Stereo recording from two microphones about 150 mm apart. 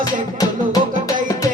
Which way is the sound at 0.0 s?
25° left (ahead or behind).